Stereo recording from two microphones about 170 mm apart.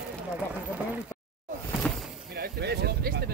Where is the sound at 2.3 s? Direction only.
70° right (ahead or behind).